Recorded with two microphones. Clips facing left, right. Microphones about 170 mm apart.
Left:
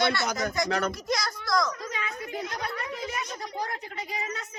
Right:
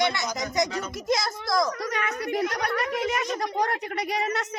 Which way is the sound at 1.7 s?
70° right (ahead or behind).